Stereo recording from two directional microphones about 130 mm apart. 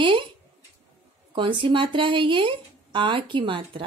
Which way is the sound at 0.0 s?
40° right (ahead or behind).